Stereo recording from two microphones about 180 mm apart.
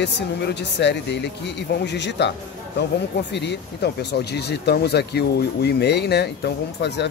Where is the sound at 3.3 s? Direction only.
70° left (ahead or behind).